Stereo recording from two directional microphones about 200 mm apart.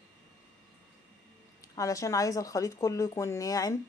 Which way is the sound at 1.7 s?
15° left (ahead or behind).